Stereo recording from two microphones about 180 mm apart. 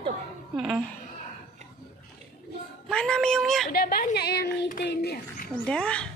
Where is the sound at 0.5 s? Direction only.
Centre (ahead or behind).